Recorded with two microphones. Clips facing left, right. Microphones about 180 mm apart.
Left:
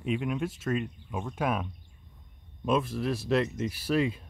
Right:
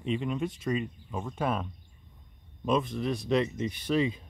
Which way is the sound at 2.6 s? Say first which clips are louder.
Even; 5° left (ahead or behind).